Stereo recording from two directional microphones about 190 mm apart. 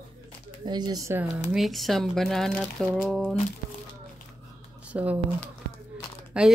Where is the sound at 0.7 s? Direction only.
20° right (ahead or behind).